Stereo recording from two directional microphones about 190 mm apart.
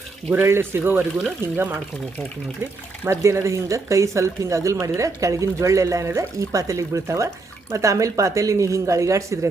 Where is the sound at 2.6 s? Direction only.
15° right (ahead or behind).